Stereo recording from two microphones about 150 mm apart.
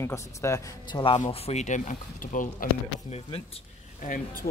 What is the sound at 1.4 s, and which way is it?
Speech, 50° left (ahead or behind).